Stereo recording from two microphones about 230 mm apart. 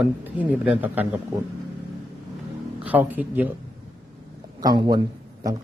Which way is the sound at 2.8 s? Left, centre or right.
Centre.